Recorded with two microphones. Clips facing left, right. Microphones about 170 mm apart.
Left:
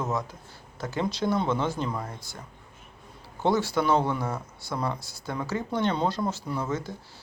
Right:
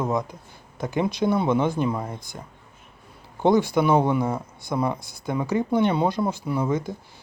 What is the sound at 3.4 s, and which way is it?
Speech, 15° right (ahead or behind).